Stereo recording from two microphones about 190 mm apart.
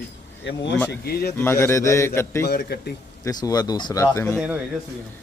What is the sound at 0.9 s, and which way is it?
Speech, 55° left (ahead or behind).